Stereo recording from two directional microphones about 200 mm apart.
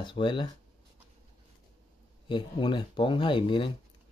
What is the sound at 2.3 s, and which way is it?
Speech, 25° left (ahead or behind).